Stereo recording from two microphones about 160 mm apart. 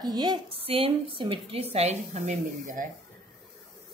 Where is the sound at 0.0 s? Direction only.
25° right (ahead or behind); by 2.9 s 55° right (ahead or behind).